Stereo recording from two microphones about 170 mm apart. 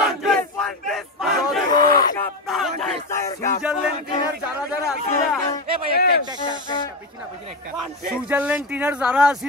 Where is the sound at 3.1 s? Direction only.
15° left (ahead or behind).